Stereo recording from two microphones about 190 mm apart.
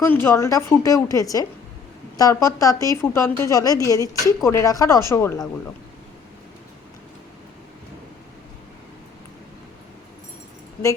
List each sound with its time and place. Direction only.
0.0 s a woman's voice: 10° left (ahead or behind)